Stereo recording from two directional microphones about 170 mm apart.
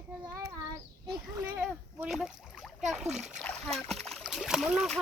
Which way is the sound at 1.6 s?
10° right (ahead or behind).